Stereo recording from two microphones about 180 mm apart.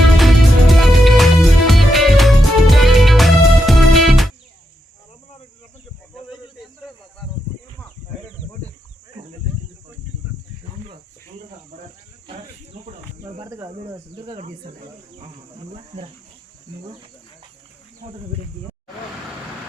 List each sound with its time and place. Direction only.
0.2 s music: centre (ahead or behind)
12.8 s cricket: 40° right (ahead or behind)
13.4 s cricket: 20° right (ahead or behind)
14.3 s snake: 35° right (ahead or behind)
18.0 s a sound: 35° right (ahead or behind)